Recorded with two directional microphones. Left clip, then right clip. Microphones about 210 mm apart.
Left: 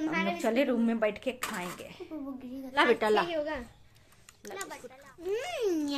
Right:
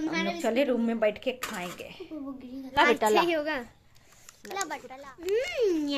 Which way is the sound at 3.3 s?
50° right (ahead or behind).